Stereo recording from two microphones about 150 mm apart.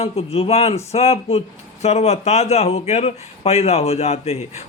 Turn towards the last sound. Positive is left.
turn(degrees=45)  # may be behind; listen again after turning